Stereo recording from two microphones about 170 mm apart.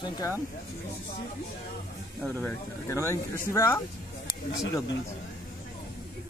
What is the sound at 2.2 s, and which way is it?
Speech, 10° left (ahead or behind).